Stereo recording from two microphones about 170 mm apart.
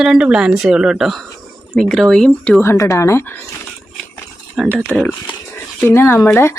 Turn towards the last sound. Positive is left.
turn(degrees=15)  # may be behind; listen again after turning